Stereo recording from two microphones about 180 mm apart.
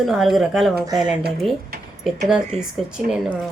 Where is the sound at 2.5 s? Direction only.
35° right (ahead or behind).